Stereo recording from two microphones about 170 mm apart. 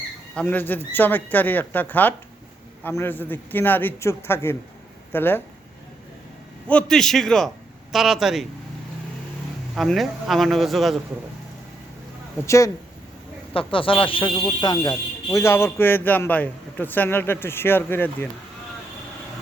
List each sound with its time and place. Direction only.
0.3 s speech: 10° left (ahead or behind)
6.7 s speech: 5° left (ahead or behind)
9.7 s speech: centre (ahead or behind)
12.5 s speech: 20° left (ahead or behind)
13.5 s speech: 30° left (ahead or behind); by 18.3 s 10° left (ahead or behind)